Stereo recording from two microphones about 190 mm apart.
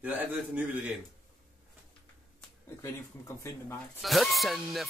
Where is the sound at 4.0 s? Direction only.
Centre (ahead or behind).